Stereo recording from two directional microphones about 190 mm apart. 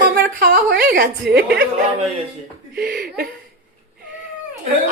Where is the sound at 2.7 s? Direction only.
55° right (ahead or behind).